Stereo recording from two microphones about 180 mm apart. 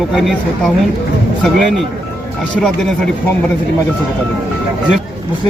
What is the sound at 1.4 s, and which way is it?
Speech, centre (ahead or behind).